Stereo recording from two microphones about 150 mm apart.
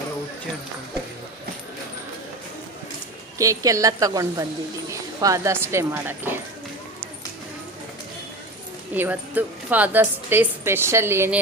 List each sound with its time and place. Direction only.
3.3 s a woman's voice: 20° right (ahead or behind)
9.0 s a woman's voice: 10° right (ahead or behind)